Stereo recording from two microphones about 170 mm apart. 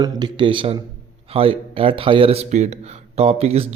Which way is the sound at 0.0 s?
25° right (ahead or behind).